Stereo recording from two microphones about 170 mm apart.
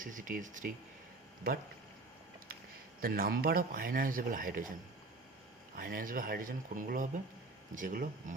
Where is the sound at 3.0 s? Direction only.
60° right (ahead or behind).